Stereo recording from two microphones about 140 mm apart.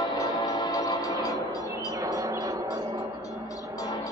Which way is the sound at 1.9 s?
25° right (ahead or behind).